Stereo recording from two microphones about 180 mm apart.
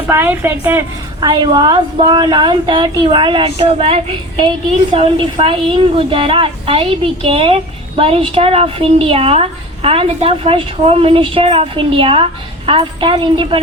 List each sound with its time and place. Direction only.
0.1 s a woman's voice: 15° right (ahead or behind); by 13.6 s 30° right (ahead or behind)